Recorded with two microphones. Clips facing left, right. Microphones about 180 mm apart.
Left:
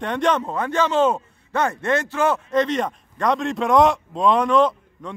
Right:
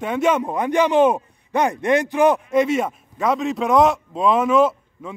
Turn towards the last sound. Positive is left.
turn(degrees=-5)  # may be behind; listen again after turning